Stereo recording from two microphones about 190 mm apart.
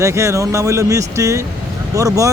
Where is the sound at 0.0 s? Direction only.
15° right (ahead or behind).